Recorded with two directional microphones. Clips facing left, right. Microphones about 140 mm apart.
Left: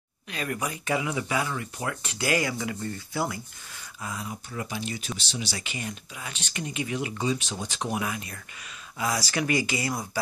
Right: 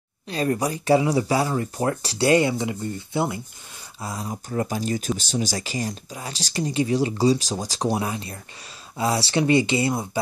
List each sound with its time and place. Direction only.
0.3 s speech: 35° right (ahead or behind)
4.0 s speech: 35° right (ahead or behind)